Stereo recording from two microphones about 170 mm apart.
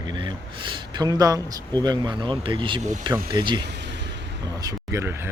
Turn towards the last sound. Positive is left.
turn(degrees=-15)  # may be behind; listen again after turning